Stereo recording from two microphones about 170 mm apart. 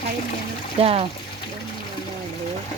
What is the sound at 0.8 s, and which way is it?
Speech, 35° right (ahead or behind).